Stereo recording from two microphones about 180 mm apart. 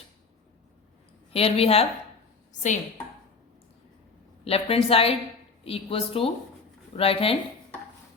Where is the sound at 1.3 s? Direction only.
35° left (ahead or behind).